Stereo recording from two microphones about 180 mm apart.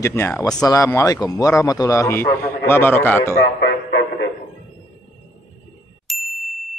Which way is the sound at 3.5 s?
65° left (ahead or behind).